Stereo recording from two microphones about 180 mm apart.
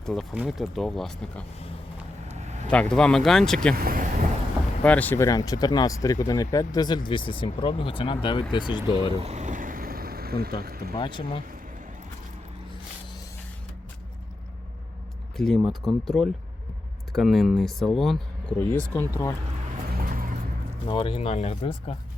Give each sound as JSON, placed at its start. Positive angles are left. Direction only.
{"t": 0.0, "sound": "speech", "side_deg": 5}
{"t": 2.2, "sound": "a sound", "side_deg": -40}
{"t": 2.6, "sound": "speech", "side_deg": 5}
{"t": 3.8, "sound": "speech", "side_deg": -50}
{"t": 4.8, "sound": "speech", "side_deg": 10}
{"t": 9.2, "sound": "vehicle", "side_deg": -40}
{"t": 10.9, "sound": "speech", "side_deg": 25}
{"t": 15.4, "sound": "speech", "side_deg": 0}
{"t": 19.9, "sound": "vehicle", "side_deg": -50}
{"t": 20.8, "sound": "speech", "side_deg": 25}